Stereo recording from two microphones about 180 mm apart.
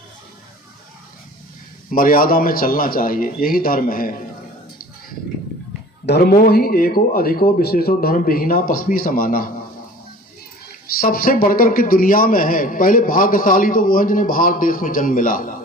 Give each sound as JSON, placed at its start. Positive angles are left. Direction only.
{"t": 1.9, "sound": "a man's voice", "side_deg": 50}
{"t": 6.1, "sound": "speech", "side_deg": 60}
{"t": 11.0, "sound": "a man's voice", "side_deg": 55}